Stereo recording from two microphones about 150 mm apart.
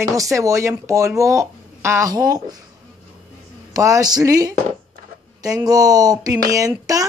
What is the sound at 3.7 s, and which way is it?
A woman's voice, 20° right (ahead or behind).